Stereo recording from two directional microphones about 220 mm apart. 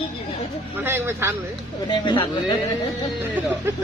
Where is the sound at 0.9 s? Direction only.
10° right (ahead or behind).